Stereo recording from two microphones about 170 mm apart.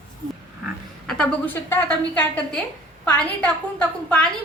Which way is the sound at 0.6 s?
5° left (ahead or behind).